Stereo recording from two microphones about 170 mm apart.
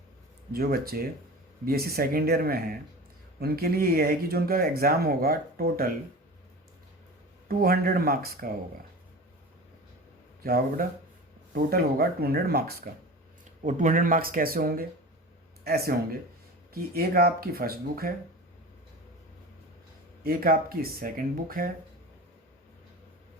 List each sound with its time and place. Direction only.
0.5 s speech: 65° right (ahead or behind)
7.4 s speech: 65° right (ahead or behind)
10.4 s speech: 60° right (ahead or behind)
13.6 s speech: 50° right (ahead or behind)
20.2 s speech: 60° right (ahead or behind)